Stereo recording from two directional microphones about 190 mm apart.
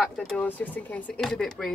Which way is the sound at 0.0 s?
5° left (ahead or behind).